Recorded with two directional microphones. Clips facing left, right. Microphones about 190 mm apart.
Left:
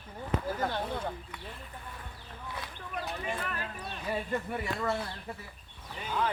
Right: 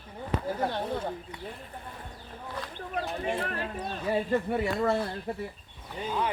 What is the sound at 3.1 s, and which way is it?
Speech, 30° right (ahead or behind).